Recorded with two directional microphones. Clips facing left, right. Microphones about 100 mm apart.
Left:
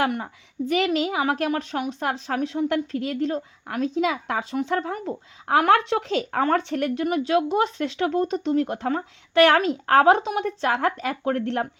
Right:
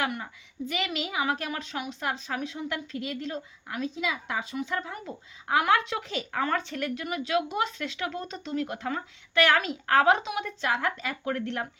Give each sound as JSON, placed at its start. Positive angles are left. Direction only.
{"t": 0.0, "sound": "a woman's voice", "side_deg": 45}
{"t": 5.9, "sound": "a woman's voice", "side_deg": 65}
{"t": 7.6, "sound": "speech", "side_deg": 30}
{"t": 8.3, "sound": "a woman's voice", "side_deg": 50}
{"t": 9.3, "sound": "speech", "side_deg": 60}
{"t": 9.6, "sound": "a woman's voice", "side_deg": 45}